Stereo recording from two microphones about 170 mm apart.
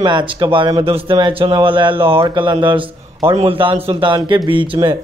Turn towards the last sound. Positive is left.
turn(degrees=-30)  # may be behind; listen again after turning